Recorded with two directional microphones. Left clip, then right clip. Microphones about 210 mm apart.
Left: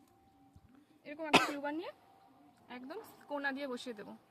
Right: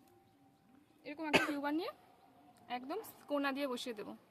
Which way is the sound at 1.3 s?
30° left (ahead or behind).